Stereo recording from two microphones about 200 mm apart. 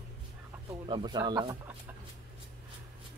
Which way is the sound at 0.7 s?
20° right (ahead or behind).